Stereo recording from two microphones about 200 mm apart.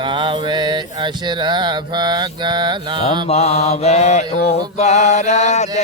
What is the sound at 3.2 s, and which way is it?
Mantra, 30° left (ahead or behind).